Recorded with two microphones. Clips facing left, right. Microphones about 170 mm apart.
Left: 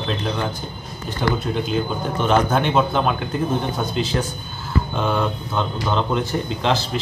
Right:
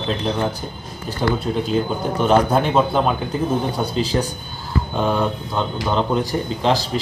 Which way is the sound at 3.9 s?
35° right (ahead or behind).